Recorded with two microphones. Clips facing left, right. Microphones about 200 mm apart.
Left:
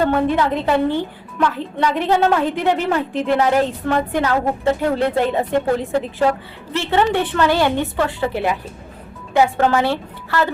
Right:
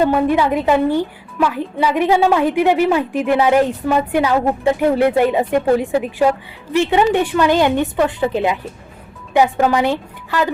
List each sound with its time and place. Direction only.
0.0 s a woman's voice: 10° right (ahead or behind)